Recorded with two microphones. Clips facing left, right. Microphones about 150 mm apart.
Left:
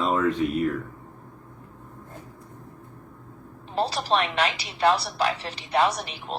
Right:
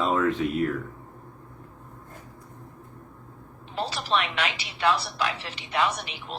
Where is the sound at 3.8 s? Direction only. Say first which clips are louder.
Left 3 dB; 40° left (ahead or behind).